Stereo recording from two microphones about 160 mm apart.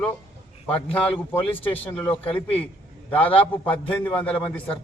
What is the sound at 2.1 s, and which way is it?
Speech, 40° left (ahead or behind).